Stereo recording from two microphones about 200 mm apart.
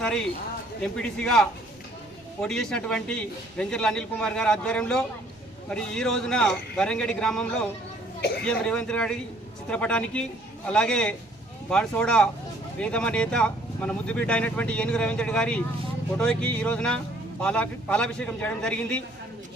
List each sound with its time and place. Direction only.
0.0 s speech: 5° left (ahead or behind)